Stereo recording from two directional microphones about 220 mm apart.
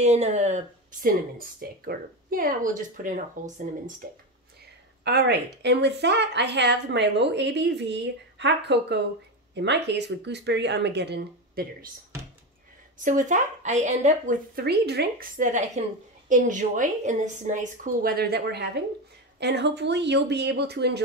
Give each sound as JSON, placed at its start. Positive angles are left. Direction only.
{"t": 0.0, "sound": "a woman's voice", "side_deg": -30}
{"t": 1.0, "sound": "a woman's voice", "side_deg": -40}
{"t": 5.0, "sound": "a woman's voice", "side_deg": -50}
{"t": 13.0, "sound": "a woman's voice", "side_deg": -35}